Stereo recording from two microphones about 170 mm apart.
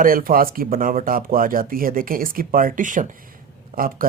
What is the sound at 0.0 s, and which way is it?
Speech, 55° right (ahead or behind).